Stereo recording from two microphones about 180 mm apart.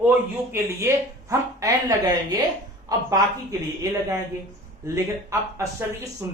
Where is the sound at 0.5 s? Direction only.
15° right (ahead or behind).